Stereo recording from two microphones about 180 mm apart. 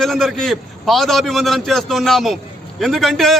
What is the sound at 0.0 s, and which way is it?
A man's voice, centre (ahead or behind).